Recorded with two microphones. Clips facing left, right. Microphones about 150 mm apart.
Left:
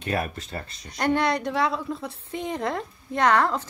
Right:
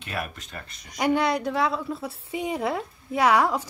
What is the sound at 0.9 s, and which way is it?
A woman's voice, 5° right (ahead or behind).